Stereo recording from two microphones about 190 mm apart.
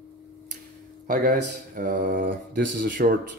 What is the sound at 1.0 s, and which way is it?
Speech, 45° right (ahead or behind).